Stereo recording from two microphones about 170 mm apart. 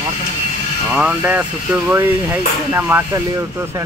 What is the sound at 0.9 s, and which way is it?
Speech, 5° right (ahead or behind).